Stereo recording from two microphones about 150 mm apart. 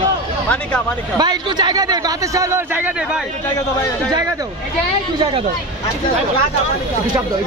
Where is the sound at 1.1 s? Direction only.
25° right (ahead or behind); by 3.2 s 10° right (ahead or behind).